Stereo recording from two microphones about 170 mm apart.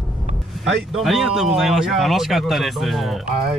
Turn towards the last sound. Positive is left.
turn(degrees=0)  # may be behind; listen again after turning